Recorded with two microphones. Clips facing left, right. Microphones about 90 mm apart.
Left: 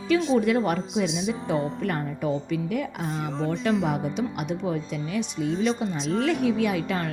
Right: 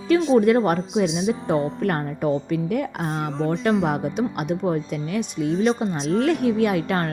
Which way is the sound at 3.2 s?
Centre (ahead or behind).